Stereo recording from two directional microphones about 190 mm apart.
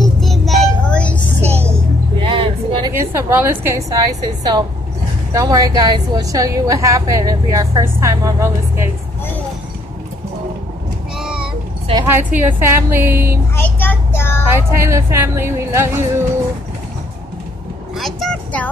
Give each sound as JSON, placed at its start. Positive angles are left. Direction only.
{"t": 0.0, "sound": "child singing", "side_deg": 0}
{"t": 2.1, "sound": "music", "side_deg": -25}
{"t": 2.9, "sound": "a woman's voice", "side_deg": -15}
{"t": 11.1, "sound": "a sound", "side_deg": -5}
{"t": 11.9, "sound": "a woman's voice", "side_deg": -10}
{"t": 13.6, "sound": "a child's voice", "side_deg": 10}
{"t": 14.5, "sound": "a woman's voice", "side_deg": -15}
{"t": 17.9, "sound": "vehicle", "side_deg": 0}